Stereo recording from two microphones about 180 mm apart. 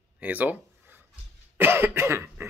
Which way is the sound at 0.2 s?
10° right (ahead or behind).